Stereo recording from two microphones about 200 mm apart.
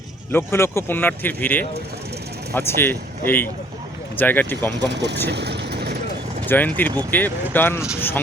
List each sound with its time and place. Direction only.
0.3 s speech: 10° left (ahead or behind)
4.7 s speech: 60° right (ahead or behind)
5.3 s vehicle: 55° right (ahead or behind)
6.5 s speech: 10° left (ahead or behind)